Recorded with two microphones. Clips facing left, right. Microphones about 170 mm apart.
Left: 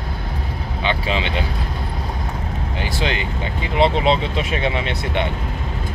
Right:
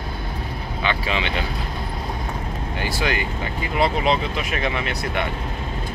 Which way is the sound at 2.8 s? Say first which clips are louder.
Even; 25° left (ahead or behind).